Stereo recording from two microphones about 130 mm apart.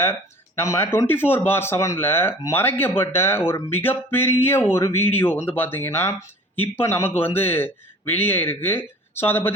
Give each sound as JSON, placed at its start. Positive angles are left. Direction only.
{"t": 0.0, "sound": "speech", "side_deg": 15}